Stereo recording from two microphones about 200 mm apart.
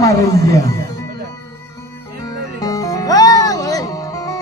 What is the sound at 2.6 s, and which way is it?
Music, 15° left (ahead or behind).